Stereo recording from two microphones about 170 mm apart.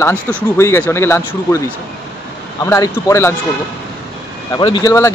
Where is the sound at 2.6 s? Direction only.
20° left (ahead or behind).